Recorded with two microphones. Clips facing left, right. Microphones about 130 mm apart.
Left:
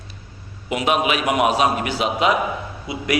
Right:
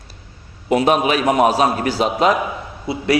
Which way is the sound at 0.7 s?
35° right (ahead or behind).